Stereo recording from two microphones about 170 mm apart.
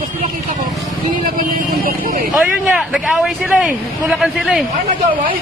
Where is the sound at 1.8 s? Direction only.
50° right (ahead or behind).